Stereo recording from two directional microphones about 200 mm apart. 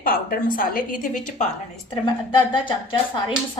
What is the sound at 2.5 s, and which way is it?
Speech, 25° left (ahead or behind).